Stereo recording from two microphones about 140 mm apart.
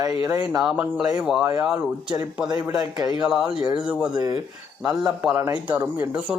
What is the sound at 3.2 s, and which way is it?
Speech, 5° right (ahead or behind).